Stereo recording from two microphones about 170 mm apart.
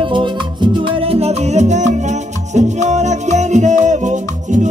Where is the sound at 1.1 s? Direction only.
40° right (ahead or behind).